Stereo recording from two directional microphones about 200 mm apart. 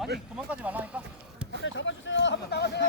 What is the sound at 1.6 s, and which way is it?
Speech, 70° left (ahead or behind).